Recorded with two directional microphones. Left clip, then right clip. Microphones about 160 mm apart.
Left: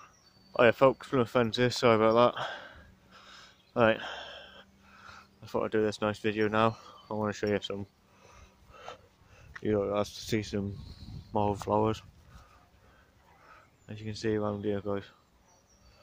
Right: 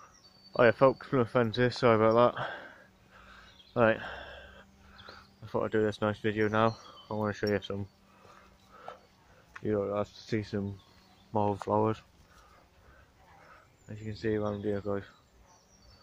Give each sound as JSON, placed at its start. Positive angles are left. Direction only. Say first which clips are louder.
{"t": 0.5, "sound": "speech", "louder": "even", "side_deg": 15}
{"t": 8.7, "sound": "a sound", "louder": "even", "side_deg": 25}
{"t": 9.7, "sound": "speech", "louder": "left 2 dB", "side_deg": 35}
{"t": 13.8, "sound": "speech", "louder": "left 1 dB", "side_deg": 25}